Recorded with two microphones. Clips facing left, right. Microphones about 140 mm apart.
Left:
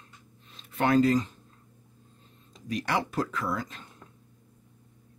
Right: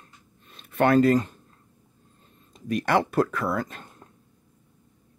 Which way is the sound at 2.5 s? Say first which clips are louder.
Right 6 dB; 55° right (ahead or behind).